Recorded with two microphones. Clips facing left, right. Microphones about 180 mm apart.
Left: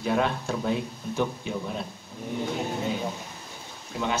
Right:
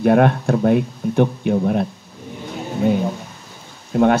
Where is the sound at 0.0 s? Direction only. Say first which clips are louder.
Right 11 dB; 60° right (ahead or behind).